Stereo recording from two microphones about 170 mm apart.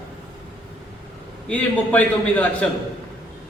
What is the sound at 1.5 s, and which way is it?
A man's voice, 10° left (ahead or behind).